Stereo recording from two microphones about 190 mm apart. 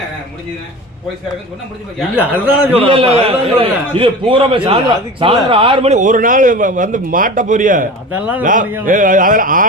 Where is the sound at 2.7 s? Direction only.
30° right (ahead or behind); by 7.9 s 45° right (ahead or behind).